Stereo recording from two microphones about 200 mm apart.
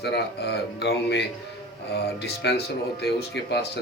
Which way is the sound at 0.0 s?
55° left (ahead or behind).